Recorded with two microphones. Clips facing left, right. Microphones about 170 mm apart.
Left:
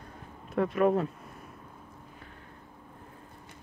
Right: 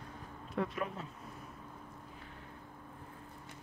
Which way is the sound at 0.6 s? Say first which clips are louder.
Left 12 dB; 60° left (ahead or behind).